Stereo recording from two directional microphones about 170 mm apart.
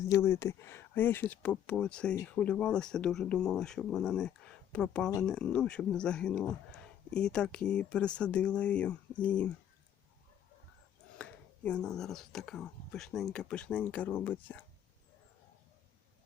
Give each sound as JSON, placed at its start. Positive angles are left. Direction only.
{"t": 0.1, "sound": "speech", "side_deg": 15}
{"t": 11.2, "sound": "speech", "side_deg": 5}